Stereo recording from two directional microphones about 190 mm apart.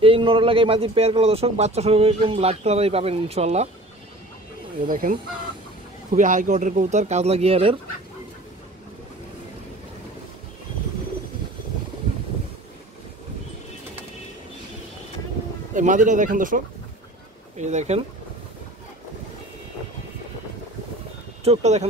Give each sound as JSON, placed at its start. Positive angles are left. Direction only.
{"t": 0.0, "sound": "a man's voice", "side_deg": -25}
{"t": 4.8, "sound": "speech", "side_deg": -45}
{"t": 6.1, "sound": "a man's voice", "side_deg": -40}
{"t": 15.7, "sound": "a man's voice", "side_deg": -40}
{"t": 21.5, "sound": "a man's voice", "side_deg": -35}